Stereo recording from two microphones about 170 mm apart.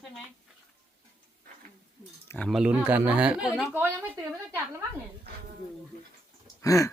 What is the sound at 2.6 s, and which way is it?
A woman's voice, 10° right (ahead or behind).